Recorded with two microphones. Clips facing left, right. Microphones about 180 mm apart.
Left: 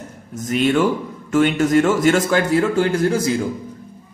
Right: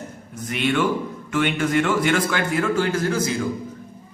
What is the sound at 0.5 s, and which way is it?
Speech, 40° left (ahead or behind).